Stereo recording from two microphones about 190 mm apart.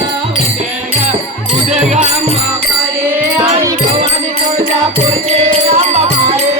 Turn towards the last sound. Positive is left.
turn(degrees=-35)  # may be behind; listen again after turning